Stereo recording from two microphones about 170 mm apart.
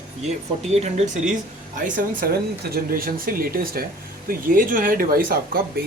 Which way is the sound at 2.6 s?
60° right (ahead or behind).